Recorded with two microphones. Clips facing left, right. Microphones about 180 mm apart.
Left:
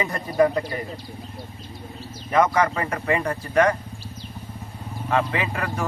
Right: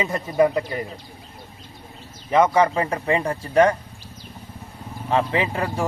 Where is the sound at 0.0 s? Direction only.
20° right (ahead or behind).